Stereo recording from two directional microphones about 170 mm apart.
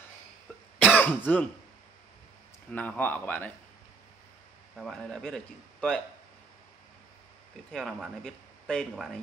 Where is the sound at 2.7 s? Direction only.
10° left (ahead or behind).